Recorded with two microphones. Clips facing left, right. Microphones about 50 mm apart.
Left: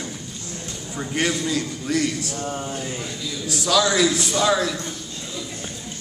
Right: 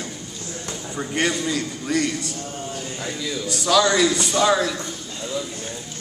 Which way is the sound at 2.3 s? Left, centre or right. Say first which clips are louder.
Left 3 dB; left.